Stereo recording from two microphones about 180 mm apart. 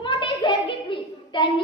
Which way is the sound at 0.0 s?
25° left (ahead or behind).